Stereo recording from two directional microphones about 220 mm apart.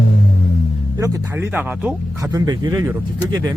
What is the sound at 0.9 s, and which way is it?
A man's voice, 15° right (ahead or behind).